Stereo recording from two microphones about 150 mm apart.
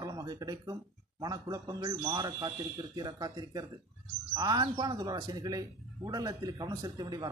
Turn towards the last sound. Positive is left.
turn(degrees=-25)  # may be behind; listen again after turning